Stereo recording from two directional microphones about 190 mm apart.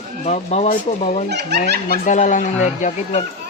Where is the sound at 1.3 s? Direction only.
60° right (ahead or behind).